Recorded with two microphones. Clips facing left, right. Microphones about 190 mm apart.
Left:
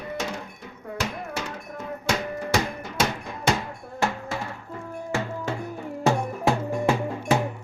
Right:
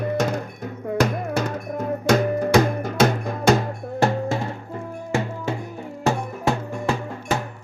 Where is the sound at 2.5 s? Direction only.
50° right (ahead or behind).